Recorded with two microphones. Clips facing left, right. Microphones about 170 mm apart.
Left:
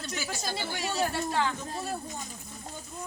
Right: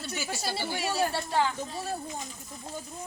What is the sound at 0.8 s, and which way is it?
Speech, 30° right (ahead or behind).